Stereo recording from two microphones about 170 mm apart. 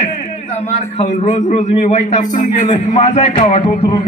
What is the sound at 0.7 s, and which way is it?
A man's voice, 45° left (ahead or behind).